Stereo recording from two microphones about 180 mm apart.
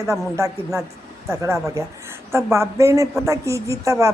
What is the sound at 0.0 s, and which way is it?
Speech, 15° right (ahead or behind).